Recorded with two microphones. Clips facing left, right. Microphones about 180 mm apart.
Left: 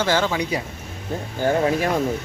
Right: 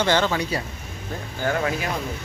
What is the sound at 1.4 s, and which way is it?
Speech, 30° left (ahead or behind).